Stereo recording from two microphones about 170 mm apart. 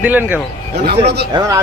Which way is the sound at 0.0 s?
10° right (ahead or behind).